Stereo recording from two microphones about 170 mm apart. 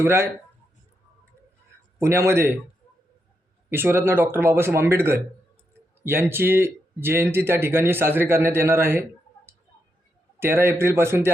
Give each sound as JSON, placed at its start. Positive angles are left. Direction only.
{"t": 0.0, "sound": "speech", "side_deg": -15}
{"t": 2.0, "sound": "speech", "side_deg": -15}
{"t": 3.7, "sound": "speech", "side_deg": -15}
{"t": 10.4, "sound": "speech", "side_deg": -15}